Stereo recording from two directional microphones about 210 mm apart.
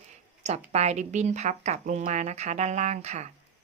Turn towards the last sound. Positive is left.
turn(degrees=-35)  # may be behind; listen again after turning